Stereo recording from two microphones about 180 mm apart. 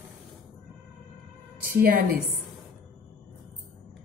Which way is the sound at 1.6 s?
55° right (ahead or behind).